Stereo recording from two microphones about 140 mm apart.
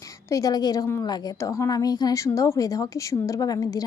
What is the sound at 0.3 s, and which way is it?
A woman's voice, 25° left (ahead or behind).